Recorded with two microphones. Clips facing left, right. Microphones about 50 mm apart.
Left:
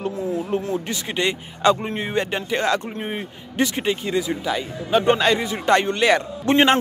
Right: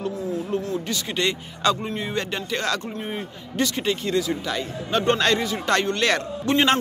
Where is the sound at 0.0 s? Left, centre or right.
Left.